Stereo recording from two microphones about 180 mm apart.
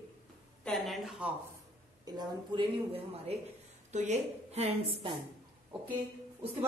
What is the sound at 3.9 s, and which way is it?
A woman's voice, 40° right (ahead or behind).